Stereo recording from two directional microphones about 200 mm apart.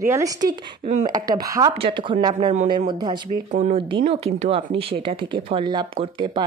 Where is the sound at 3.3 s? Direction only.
40° right (ahead or behind).